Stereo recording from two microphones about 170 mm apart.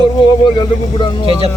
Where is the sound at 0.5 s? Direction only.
30° left (ahead or behind).